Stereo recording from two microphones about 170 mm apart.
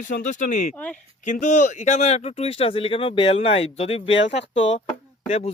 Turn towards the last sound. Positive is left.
turn(degrees=35)  # may be behind; listen again after turning